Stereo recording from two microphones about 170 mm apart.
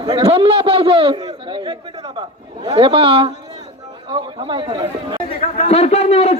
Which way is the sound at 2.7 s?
30° right (ahead or behind).